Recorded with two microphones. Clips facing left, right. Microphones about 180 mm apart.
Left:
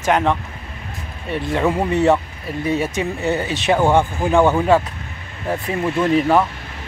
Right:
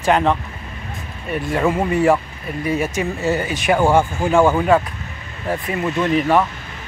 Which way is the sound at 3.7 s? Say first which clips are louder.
Even; centre (ahead or behind).